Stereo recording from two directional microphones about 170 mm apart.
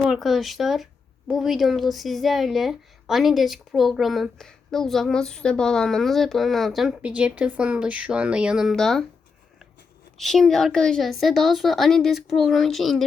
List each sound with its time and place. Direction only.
0.0 s speech: centre (ahead or behind)
10.2 s speech: centre (ahead or behind)